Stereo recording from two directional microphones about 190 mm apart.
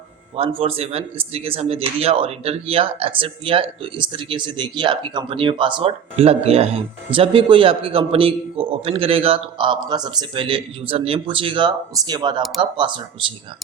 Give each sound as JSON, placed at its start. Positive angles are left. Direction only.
{"t": 0.3, "sound": "speech", "side_deg": -30}